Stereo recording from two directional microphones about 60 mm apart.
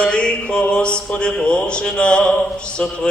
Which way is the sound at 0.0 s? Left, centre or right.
Centre.